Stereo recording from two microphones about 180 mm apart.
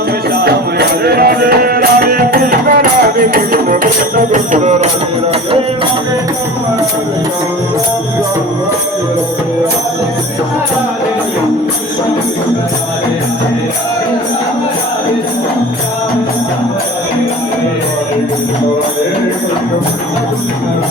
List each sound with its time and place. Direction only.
0.3 s music: 60° right (ahead or behind); by 4.9 s 40° right (ahead or behind)